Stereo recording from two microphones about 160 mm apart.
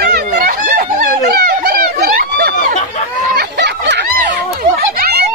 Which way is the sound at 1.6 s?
70° right (ahead or behind).